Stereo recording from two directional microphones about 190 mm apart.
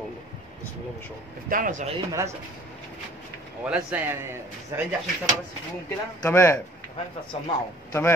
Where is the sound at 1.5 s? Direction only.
45° right (ahead or behind).